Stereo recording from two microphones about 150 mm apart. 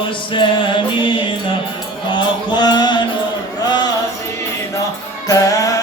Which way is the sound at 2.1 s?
30° left (ahead or behind).